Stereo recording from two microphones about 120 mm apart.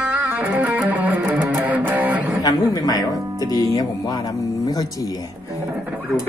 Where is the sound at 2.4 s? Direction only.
35° left (ahead or behind).